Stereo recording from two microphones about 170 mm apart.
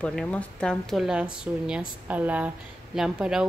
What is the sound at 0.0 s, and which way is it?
A woman's voice, 5° left (ahead or behind).